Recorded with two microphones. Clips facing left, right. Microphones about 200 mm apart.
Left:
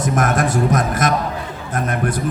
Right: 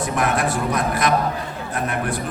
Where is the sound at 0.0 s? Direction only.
45° left (ahead or behind).